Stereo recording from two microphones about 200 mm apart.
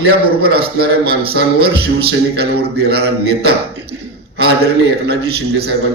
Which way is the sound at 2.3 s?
55° right (ahead or behind).